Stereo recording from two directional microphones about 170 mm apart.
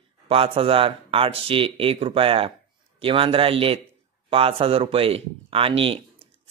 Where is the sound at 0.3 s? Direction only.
35° right (ahead or behind).